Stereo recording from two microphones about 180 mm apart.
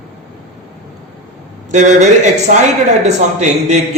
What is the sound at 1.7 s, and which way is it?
Speech, 40° right (ahead or behind).